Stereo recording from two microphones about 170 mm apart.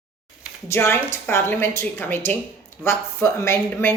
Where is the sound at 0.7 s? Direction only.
15° left (ahead or behind).